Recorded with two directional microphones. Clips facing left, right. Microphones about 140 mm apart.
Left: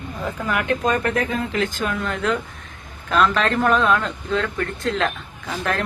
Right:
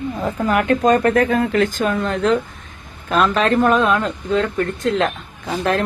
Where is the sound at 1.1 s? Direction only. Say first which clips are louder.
Right 7 dB; 60° right (ahead or behind).